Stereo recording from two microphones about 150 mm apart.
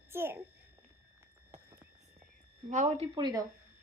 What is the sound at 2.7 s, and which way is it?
Speech, 55° right (ahead or behind).